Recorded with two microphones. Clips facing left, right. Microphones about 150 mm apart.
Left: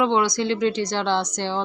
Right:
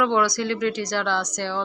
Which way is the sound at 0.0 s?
20° left (ahead or behind).